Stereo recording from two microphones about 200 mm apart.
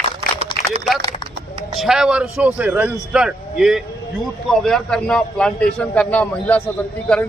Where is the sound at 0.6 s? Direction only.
45° left (ahead or behind).